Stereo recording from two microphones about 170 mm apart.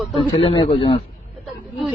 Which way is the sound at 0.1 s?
35° left (ahead or behind).